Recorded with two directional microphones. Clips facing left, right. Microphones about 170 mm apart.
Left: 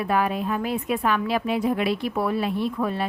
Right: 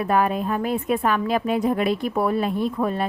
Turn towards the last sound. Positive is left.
turn(degrees=-45)  # may be behind; listen again after turning